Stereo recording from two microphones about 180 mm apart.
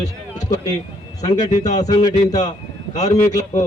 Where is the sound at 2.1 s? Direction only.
40° left (ahead or behind).